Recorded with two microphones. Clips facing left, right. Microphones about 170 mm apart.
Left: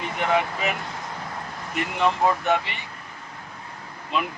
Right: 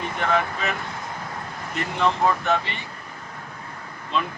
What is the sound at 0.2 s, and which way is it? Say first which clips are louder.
Speech: left 1 dB; 15° left (ahead or behind).